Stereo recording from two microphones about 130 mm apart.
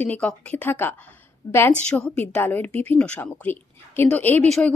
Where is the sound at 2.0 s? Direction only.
10° left (ahead or behind).